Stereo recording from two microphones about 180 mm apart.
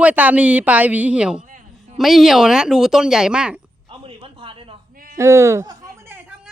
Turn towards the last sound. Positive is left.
turn(degrees=-10)  # may be behind; listen again after turning